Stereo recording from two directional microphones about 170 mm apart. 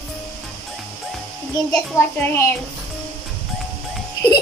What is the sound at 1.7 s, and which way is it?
Speech, 15° left (ahead or behind).